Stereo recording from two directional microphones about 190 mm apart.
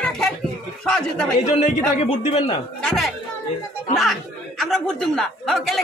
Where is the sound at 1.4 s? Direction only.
35° left (ahead or behind).